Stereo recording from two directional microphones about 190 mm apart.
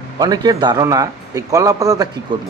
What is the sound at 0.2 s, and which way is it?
Speech, 20° right (ahead or behind).